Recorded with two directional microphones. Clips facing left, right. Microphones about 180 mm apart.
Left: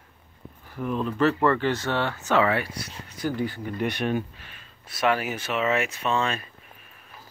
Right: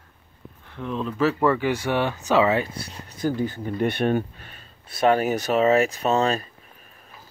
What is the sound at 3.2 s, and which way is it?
Speech, 45° right (ahead or behind).